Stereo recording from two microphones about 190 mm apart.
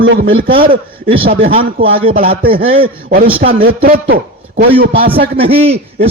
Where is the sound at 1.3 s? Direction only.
55° right (ahead or behind).